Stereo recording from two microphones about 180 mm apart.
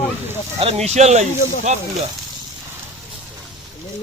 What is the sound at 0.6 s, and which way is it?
Speech, 35° right (ahead or behind).